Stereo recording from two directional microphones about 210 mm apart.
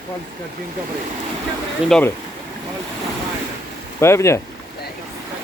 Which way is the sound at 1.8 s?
5° left (ahead or behind).